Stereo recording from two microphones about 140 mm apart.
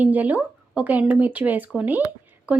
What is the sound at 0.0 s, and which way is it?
Speech, 10° right (ahead or behind).